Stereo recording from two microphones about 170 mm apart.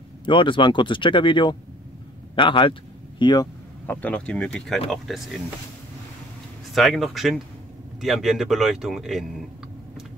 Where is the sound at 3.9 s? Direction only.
10° left (ahead or behind).